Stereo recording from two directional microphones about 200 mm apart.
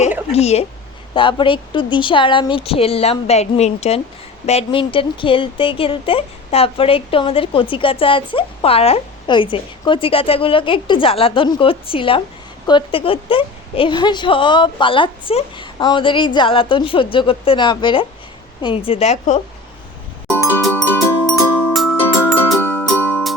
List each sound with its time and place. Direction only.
0.3 s a woman's voice: 30° left (ahead or behind)
20.2 s music: 10° left (ahead or behind)